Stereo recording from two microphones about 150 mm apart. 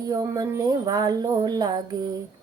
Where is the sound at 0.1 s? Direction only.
25° right (ahead or behind).